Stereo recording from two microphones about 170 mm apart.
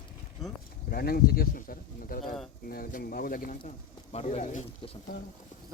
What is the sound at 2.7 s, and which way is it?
Speech, 60° left (ahead or behind).